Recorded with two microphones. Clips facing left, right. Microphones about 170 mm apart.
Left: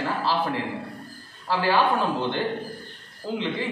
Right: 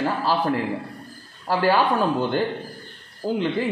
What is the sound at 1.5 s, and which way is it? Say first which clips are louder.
Speech: right 2 dB; 45° right (ahead or behind).